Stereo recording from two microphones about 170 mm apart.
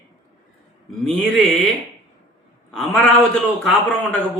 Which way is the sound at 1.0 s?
5° left (ahead or behind).